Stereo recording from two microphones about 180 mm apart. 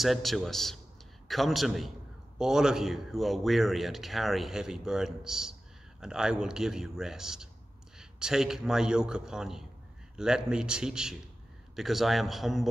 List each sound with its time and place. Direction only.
0.0 s a man's voice: centre (ahead or behind)